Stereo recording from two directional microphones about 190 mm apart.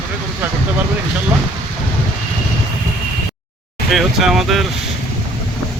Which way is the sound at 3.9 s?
Centre (ahead or behind).